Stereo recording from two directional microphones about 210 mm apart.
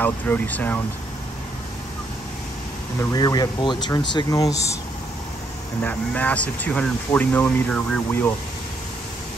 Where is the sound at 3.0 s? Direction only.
15° left (ahead or behind).